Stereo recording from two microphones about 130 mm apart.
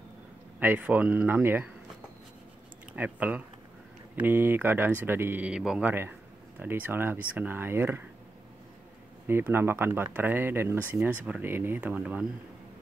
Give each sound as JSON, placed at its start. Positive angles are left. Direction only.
{"t": 0.6, "sound": "speech", "side_deg": -15}
{"t": 3.0, "sound": "speech", "side_deg": -10}
{"t": 9.3, "sound": "speech", "side_deg": -15}